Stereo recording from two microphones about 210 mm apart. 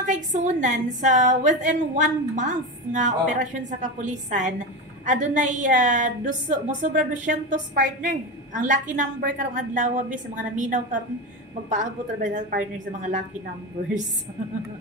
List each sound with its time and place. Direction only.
0.1 s a woman's voice: 35° right (ahead or behind)